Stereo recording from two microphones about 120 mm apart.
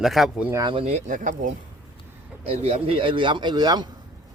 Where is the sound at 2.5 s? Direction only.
55° right (ahead or behind); by 3.8 s 35° right (ahead or behind).